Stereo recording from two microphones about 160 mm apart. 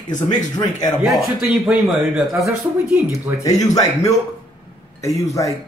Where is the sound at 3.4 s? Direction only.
20° left (ahead or behind).